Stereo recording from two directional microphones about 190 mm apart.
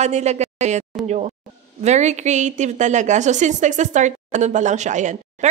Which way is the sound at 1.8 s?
35° right (ahead or behind).